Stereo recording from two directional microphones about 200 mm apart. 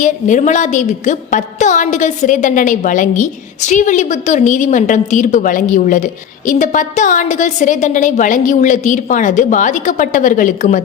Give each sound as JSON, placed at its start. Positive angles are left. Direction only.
{"t": 0.0, "sound": "a woman's voice", "side_deg": 40}